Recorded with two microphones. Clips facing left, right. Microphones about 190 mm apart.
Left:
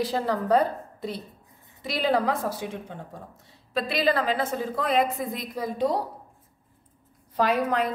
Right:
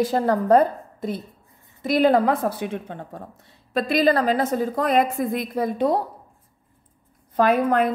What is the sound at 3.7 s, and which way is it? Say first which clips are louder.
A woman's voice: right 5 dB; 45° right (ahead or behind).